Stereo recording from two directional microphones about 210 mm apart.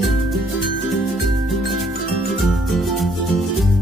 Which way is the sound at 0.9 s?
Centre (ahead or behind).